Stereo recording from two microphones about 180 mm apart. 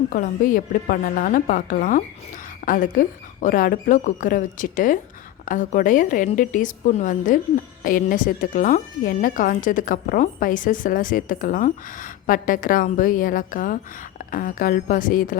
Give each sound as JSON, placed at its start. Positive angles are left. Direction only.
{"t": 0.1, "sound": "a woman's voice", "side_deg": 50}